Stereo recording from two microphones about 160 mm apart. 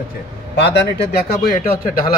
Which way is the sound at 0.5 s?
90° left.